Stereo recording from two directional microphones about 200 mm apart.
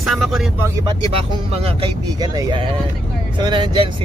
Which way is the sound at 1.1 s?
30° right (ahead or behind).